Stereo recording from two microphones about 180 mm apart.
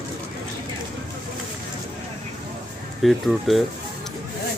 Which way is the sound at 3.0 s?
Centre (ahead or behind).